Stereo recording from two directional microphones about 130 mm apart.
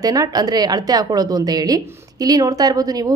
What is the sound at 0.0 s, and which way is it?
A woman's voice, 30° right (ahead or behind).